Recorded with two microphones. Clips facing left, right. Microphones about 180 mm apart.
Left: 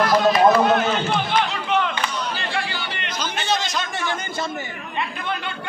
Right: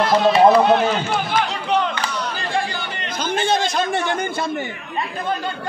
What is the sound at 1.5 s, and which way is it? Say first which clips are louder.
Chatter: right 2 dB; 35° right (ahead or behind).